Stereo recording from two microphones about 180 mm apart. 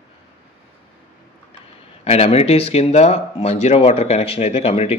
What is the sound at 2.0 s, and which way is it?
Speech, 35° left (ahead or behind).